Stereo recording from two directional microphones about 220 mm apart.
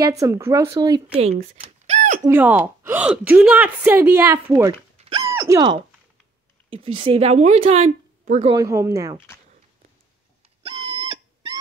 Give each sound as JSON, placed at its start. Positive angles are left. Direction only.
{"t": 0.0, "sound": "a woman's voice", "side_deg": -15}
{"t": 1.1, "sound": "speech", "side_deg": -30}
{"t": 2.2, "sound": "a woman's voice", "side_deg": -10}
{"t": 5.1, "sound": "a sound", "side_deg": -15}
{"t": 6.7, "sound": "speech", "side_deg": -25}
{"t": 8.5, "sound": "a woman's voice", "side_deg": -15}
{"t": 10.6, "sound": "a sound", "side_deg": -25}